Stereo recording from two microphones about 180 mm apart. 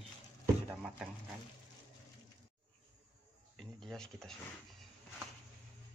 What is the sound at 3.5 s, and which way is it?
Speech, 5° left (ahead or behind).